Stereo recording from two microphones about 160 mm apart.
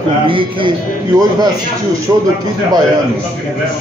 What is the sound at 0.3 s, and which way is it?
Speech, 30° right (ahead or behind).